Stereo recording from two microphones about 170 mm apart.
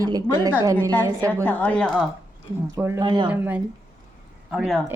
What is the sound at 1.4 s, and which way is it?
Speech, 10° left (ahead or behind).